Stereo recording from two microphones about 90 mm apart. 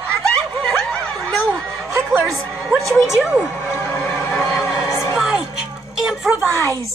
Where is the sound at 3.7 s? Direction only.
25° left (ahead or behind).